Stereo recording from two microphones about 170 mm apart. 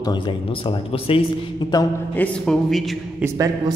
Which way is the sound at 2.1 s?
10° left (ahead or behind).